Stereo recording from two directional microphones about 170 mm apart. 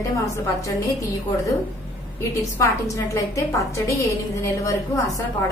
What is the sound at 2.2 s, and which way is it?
A woman's voice, 20° left (ahead or behind).